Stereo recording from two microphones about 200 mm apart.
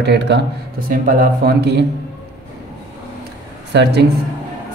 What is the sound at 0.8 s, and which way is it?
Speech, 45° right (ahead or behind).